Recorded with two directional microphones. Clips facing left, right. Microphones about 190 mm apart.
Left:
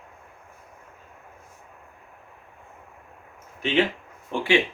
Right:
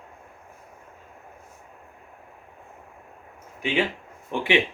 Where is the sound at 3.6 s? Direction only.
10° right (ahead or behind).